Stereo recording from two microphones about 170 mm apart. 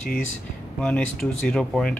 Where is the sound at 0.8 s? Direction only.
5° left (ahead or behind).